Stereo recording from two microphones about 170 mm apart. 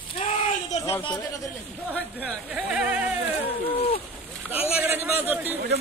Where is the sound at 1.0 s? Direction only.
25° left (ahead or behind).